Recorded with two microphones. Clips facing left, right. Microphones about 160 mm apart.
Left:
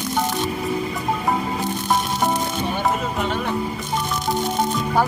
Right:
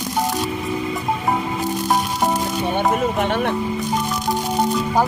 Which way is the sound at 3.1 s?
65° right (ahead or behind).